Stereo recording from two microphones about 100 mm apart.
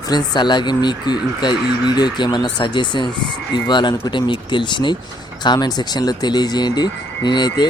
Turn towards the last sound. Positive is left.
turn(degrees=45)  # may be behind; listen again after turning